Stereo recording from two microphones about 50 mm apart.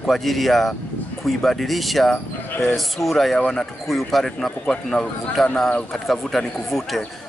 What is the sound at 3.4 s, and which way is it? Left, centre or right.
Speech, centre.